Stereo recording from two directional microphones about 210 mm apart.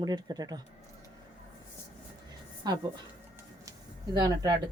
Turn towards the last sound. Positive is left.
turn(degrees=-20)  # may be behind; listen again after turning